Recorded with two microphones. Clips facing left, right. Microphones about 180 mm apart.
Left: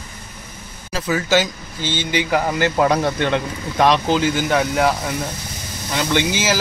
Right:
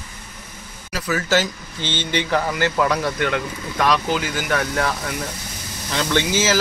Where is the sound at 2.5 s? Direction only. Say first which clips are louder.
Left 3 dB; 25° left (ahead or behind).